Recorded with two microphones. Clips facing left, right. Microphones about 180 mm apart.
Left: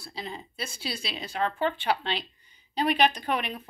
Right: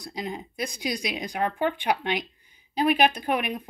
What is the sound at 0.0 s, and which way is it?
Speech, 15° right (ahead or behind).